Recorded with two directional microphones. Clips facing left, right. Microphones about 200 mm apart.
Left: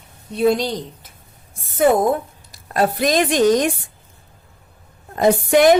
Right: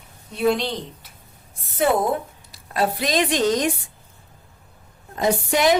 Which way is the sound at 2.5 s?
45° left (ahead or behind).